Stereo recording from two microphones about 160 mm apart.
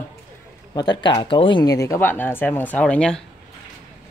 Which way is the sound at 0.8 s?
25° left (ahead or behind).